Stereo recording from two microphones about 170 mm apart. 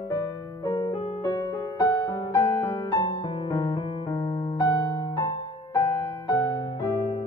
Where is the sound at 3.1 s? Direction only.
30° left (ahead or behind).